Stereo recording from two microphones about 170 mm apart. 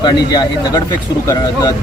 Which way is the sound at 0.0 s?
25° left (ahead or behind).